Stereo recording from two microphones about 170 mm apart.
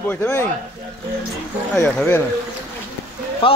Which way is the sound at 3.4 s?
35° left (ahead or behind).